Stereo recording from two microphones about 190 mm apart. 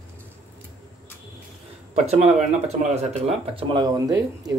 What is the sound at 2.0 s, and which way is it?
Speech, 35° right (ahead or behind).